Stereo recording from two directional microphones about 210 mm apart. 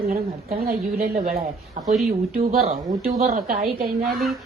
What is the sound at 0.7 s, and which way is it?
A woman's voice, 40° right (ahead or behind).